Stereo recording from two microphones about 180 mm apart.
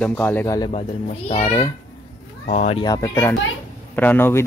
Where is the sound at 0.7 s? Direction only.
35° left (ahead or behind).